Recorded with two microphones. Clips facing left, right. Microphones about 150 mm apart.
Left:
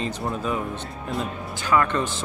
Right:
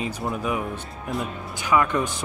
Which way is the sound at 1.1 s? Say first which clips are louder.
Even; centre (ahead or behind).